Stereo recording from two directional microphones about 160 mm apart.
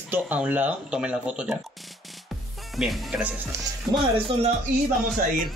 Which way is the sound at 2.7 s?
Centre (ahead or behind).